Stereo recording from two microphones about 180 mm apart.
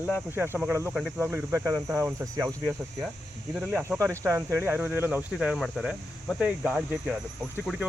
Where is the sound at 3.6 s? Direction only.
5° right (ahead or behind).